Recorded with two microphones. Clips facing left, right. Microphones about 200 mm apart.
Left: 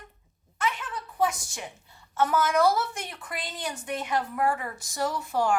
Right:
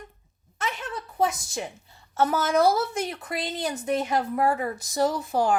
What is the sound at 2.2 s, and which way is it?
Speech, 40° right (ahead or behind).